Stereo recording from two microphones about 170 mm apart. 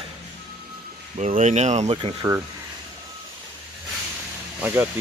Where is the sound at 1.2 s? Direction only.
45° right (ahead or behind).